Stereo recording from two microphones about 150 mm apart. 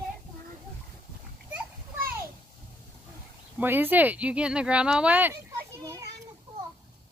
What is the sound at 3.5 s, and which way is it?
Speech, 15° right (ahead or behind).